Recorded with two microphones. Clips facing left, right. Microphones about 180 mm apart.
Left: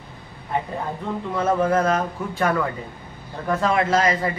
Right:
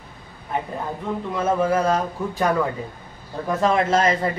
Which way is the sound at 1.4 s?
10° right (ahead or behind).